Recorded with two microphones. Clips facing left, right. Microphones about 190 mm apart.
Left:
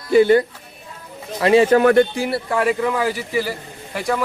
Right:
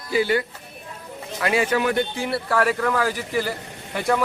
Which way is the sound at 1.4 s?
30° left (ahead or behind).